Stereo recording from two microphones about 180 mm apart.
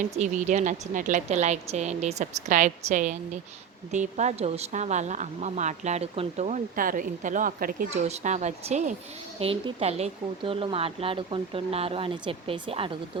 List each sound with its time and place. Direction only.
0.2 s a woman's voice: 40° right (ahead or behind)